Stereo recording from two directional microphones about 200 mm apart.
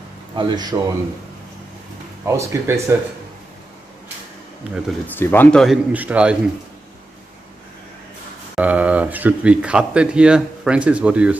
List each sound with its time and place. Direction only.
0.4 s speech: 20° right (ahead or behind)
2.2 s speech: 15° right (ahead or behind)
4.6 s speech: 5° right (ahead or behind)
5.0 s speech: 10° left (ahead or behind); by 6.3 s 5° right (ahead or behind)
8.5 s speech: 5° right (ahead or behind)